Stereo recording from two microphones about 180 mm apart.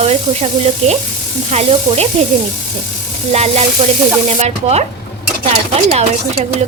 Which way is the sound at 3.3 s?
35° right (ahead or behind).